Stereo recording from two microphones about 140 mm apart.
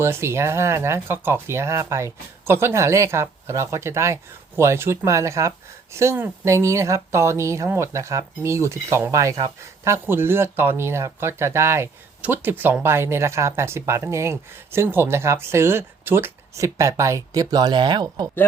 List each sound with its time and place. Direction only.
0.0 s speech: 20° right (ahead or behind)